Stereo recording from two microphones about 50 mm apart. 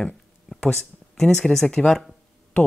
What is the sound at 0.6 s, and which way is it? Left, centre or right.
Speech, centre.